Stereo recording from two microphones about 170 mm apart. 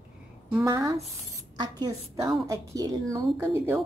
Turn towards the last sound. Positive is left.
turn(degrees=-15)  # may be behind; listen again after turning